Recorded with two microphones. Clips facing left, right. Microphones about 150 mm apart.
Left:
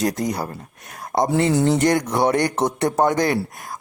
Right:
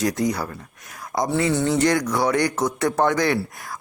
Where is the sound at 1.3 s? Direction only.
45° left (ahead or behind).